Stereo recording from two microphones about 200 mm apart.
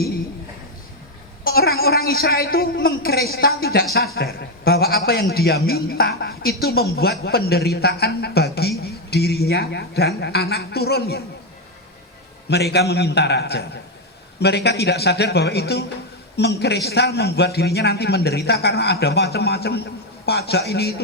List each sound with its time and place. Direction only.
1.5 s a man's voice: 50° left (ahead or behind)
12.5 s a man's voice: 55° left (ahead or behind)